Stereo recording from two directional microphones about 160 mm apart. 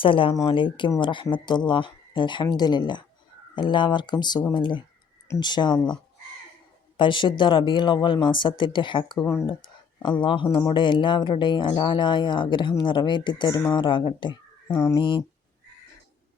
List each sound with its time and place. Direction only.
0.0 s speech: 35° left (ahead or behind)
6.9 s speech: 30° left (ahead or behind)